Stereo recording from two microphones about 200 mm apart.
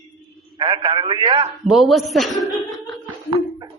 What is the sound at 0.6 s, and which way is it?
Speech, 25° right (ahead or behind).